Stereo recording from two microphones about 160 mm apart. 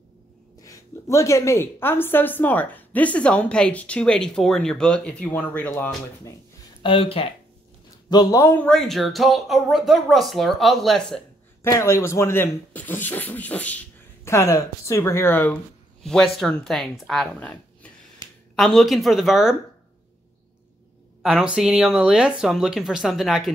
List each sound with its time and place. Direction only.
0.6 s a woman's voice: 20° left (ahead or behind)
6.8 s speech: 35° left (ahead or behind)
8.1 s a man's voice: 20° left (ahead or behind)
8.6 s speech: centre (ahead or behind)
11.6 s a woman's voice: 15° left (ahead or behind)
16.0 s speech: 5° left (ahead or behind)
21.2 s speech: 5° right (ahead or behind)